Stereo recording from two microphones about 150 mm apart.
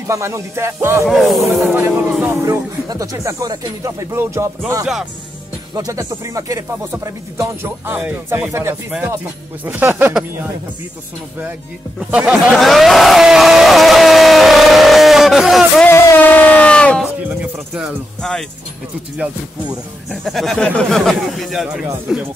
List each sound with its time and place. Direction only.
0.0 s speech: 20° right (ahead or behind)
1.0 s speech: centre (ahead or behind)
1.8 s speech: 15° right (ahead or behind)
5.8 s speech: 25° right (ahead or behind)
12.1 s a sound: 10° right (ahead or behind)
15.9 s a sound: 15° left (ahead or behind)
17.0 s music: 5° right (ahead or behind)
20.1 s speech: centre (ahead or behind)